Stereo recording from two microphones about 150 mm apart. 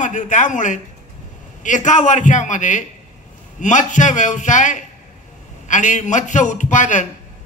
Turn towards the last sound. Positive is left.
turn(degrees=55)  # may be behind; listen again after turning